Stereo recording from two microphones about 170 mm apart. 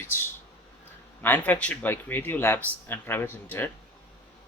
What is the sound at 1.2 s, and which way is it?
Speech, 10° left (ahead or behind).